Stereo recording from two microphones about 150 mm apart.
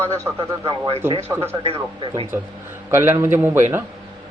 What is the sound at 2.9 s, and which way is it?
Speech, 15° right (ahead or behind).